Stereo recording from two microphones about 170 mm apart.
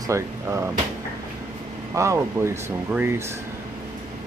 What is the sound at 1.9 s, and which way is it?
Speech, 15° right (ahead or behind).